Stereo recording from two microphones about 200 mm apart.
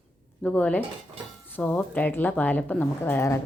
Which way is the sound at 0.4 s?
5° left (ahead or behind).